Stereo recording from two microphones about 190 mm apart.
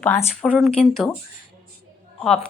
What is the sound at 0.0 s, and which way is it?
Speech, 10° left (ahead or behind).